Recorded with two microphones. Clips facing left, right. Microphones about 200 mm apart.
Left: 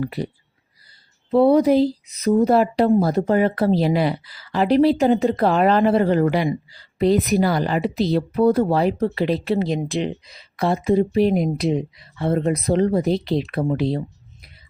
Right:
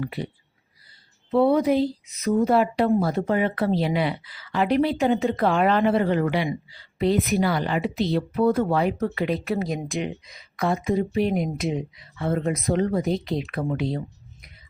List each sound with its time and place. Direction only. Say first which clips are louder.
0.0 s a woman's voice: left 4 dB; 40° left (ahead or behind)
1.3 s a woman's voice: left 4 dB; 35° left (ahead or behind)